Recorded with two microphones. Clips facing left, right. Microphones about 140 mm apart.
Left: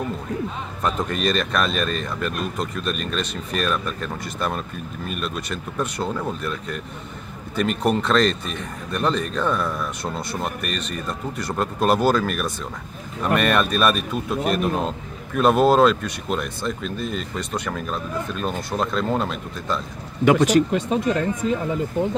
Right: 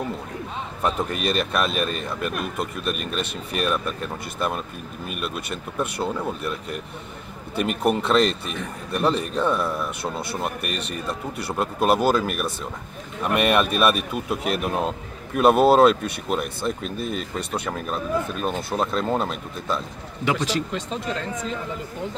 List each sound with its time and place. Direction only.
0.8 s speech: 10° right (ahead or behind)
20.2 s speech: 50° left (ahead or behind)